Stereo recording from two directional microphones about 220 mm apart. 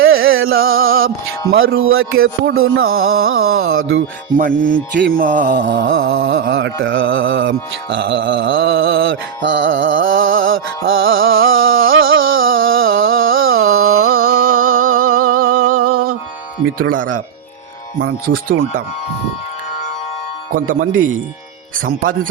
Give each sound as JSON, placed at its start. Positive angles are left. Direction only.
{"t": 0.0, "sound": "music", "side_deg": -65}
{"t": 0.5, "sound": "music", "side_deg": -45}
{"t": 1.6, "sound": "music", "side_deg": -65}
{"t": 4.4, "sound": "music", "side_deg": -40}
{"t": 5.6, "sound": "music", "side_deg": -60}
{"t": 6.4, "sound": "music", "side_deg": -50}
{"t": 14.6, "sound": "a sound", "side_deg": -70}
{"t": 15.1, "sound": "a sound", "side_deg": -80}
{"t": 15.8, "sound": "music", "side_deg": -90}
{"t": 16.7, "sound": "music", "side_deg": -40}
{"t": 20.7, "sound": "music", "side_deg": -35}